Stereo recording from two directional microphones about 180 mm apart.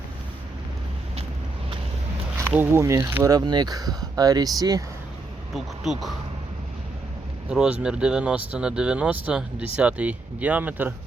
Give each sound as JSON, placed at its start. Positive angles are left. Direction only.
{"t": 2.4, "sound": "speech", "side_deg": -10}
{"t": 5.5, "sound": "speech", "side_deg": 0}
{"t": 7.5, "sound": "speech", "side_deg": -5}